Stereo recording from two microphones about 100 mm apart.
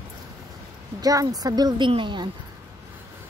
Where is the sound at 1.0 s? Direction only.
35° right (ahead or behind).